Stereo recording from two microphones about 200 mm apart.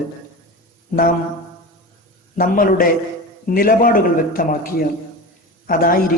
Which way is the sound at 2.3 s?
45° left (ahead or behind).